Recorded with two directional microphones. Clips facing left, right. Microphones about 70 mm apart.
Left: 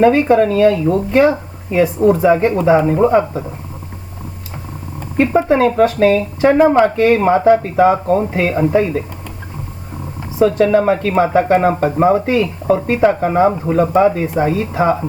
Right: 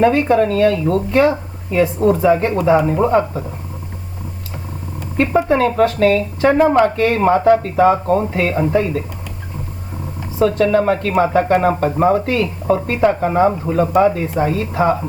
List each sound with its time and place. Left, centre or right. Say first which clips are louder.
0.0 s speech: left 2 dB; left
5.1 s speech: left 2 dB; centre
8.0 s speech: left 1 dB; centre
8.3 s speech: left 2 dB; centre
10.3 s speech: left 2 dB; left